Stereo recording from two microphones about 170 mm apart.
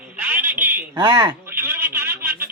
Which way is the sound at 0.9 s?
25° right (ahead or behind).